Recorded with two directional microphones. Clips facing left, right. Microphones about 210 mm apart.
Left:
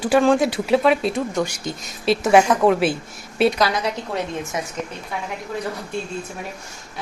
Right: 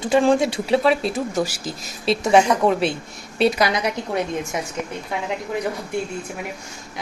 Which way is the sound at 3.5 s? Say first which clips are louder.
Even; 15° right (ahead or behind).